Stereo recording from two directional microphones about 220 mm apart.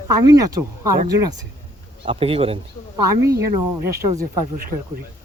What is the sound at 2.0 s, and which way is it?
Speech, 25° right (ahead or behind).